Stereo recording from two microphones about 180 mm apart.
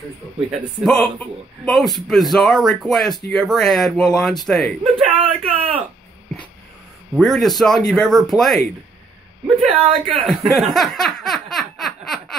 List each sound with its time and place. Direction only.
0.5 s a man's voice: centre (ahead or behind)
5.0 s speech: 35° right (ahead or behind)
7.2 s a man's voice: centre (ahead or behind)
9.6 s speech: 30° right (ahead or behind)
10.2 s laughter: centre (ahead or behind)